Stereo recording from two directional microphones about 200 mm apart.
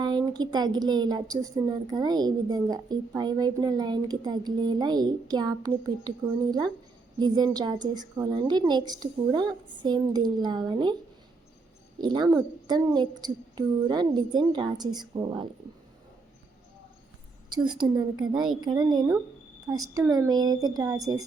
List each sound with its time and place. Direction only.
0.0 s a woman's voice: 20° right (ahead or behind)
11.9 s a woman's voice: 20° right (ahead or behind)
17.5 s a woman's voice: 20° right (ahead or behind)